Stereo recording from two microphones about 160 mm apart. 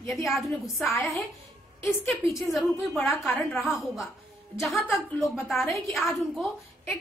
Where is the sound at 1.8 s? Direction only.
15° left (ahead or behind).